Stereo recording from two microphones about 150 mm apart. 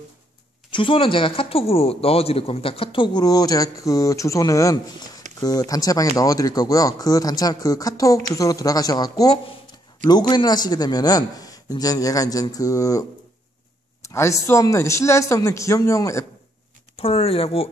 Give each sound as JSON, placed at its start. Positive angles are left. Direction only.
{"t": 0.7, "sound": "a man's voice", "side_deg": 35}
{"t": 14.0, "sound": "a man's voice", "side_deg": 20}
{"t": 16.9, "sound": "speech", "side_deg": 40}